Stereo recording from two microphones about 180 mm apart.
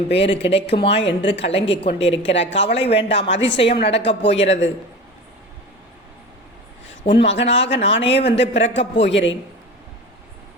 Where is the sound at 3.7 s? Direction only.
70° left (ahead or behind).